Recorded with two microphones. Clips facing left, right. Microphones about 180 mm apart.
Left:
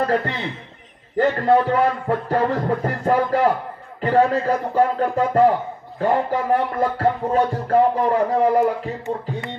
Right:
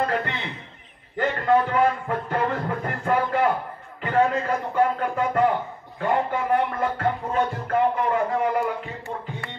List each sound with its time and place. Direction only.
0.0 s music: 35° left (ahead or behind)